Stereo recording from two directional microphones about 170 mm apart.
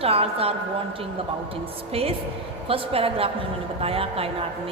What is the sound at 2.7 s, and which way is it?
A man's voice, 35° right (ahead or behind).